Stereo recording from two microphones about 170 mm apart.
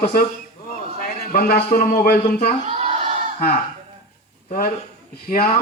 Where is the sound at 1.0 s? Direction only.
60° left (ahead or behind).